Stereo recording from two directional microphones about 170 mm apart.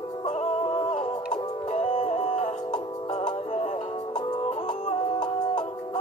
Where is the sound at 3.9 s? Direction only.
25° left (ahead or behind).